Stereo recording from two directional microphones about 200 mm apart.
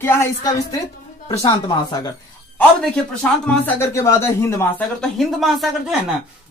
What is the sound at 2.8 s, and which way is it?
Speech, 5° left (ahead or behind).